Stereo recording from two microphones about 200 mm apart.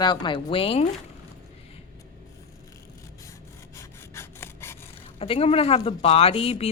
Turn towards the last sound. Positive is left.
turn(degrees=30)  # may be behind; listen again after turning